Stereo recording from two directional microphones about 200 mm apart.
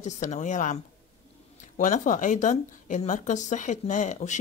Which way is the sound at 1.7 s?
40° left (ahead or behind).